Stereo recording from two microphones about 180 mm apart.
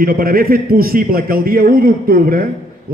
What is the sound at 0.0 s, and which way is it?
A man's voice, 55° right (ahead or behind).